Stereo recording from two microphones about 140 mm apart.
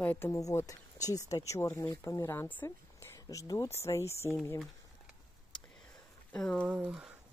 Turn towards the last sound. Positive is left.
turn(degrees=-5)  # may be behind; listen again after turning